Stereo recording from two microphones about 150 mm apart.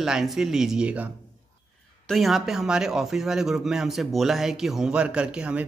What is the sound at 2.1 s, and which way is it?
Speech, centre (ahead or behind).